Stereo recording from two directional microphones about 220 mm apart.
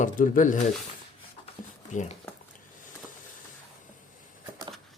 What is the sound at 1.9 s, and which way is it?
Speech, 35° left (ahead or behind).